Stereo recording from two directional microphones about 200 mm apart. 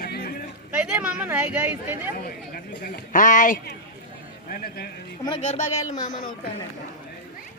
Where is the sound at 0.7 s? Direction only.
5° right (ahead or behind).